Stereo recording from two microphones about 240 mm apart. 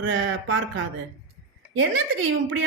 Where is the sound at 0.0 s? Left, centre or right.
Right.